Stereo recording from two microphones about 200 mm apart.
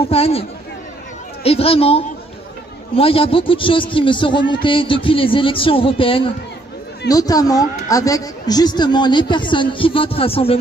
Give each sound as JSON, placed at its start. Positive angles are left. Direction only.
{"t": 0.0, "sound": "a woman's voice", "side_deg": 30}